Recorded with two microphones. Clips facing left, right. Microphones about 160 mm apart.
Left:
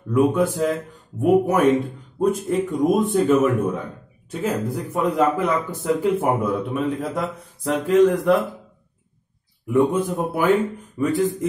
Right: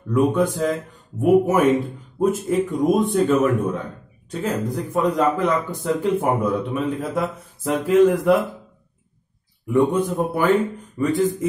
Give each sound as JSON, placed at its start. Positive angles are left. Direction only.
{"t": 0.1, "sound": "a man's voice", "side_deg": 5}
{"t": 9.7, "sound": "a man's voice", "side_deg": 0}